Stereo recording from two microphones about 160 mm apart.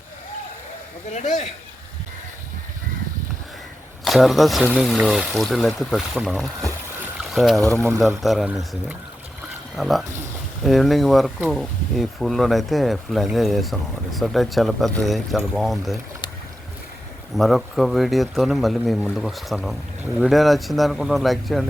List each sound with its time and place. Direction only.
1.1 s speech: 45° left (ahead or behind)
4.0 s speech: centre (ahead or behind)
7.7 s speech: 20° right (ahead or behind)
7.9 s speech: centre (ahead or behind)
17.3 s speech: centre (ahead or behind)